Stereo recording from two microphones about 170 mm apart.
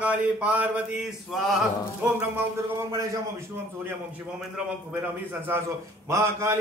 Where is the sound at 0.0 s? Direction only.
10° right (ahead or behind).